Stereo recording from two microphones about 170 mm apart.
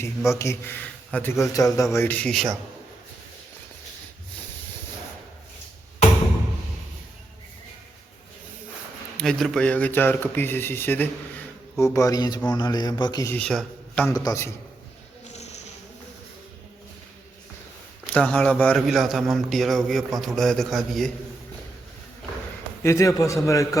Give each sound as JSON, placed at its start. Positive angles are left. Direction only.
{"t": 0.0, "sound": "a man's voice", "side_deg": 15}
{"t": 9.1, "sound": "a man's voice", "side_deg": 5}
{"t": 13.3, "sound": "a man's voice", "side_deg": 5}
{"t": 14.1, "sound": "a man's voice", "side_deg": 20}
{"t": 18.0, "sound": "a man's voice", "side_deg": 10}
{"t": 22.8, "sound": "a man's voice", "side_deg": 15}